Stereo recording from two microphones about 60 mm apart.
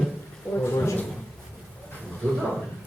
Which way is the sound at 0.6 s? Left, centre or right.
Left.